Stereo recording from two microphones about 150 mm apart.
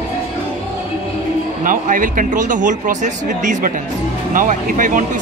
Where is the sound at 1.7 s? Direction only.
65° right (ahead or behind).